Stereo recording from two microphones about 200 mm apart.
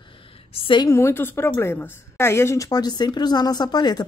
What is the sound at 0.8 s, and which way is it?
A woman's voice, 15° left (ahead or behind).